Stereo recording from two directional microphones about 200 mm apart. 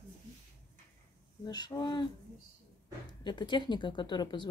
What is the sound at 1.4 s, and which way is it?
Speech, 20° left (ahead or behind).